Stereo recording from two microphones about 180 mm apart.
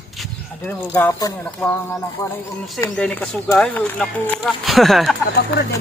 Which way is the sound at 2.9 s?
5° left (ahead or behind).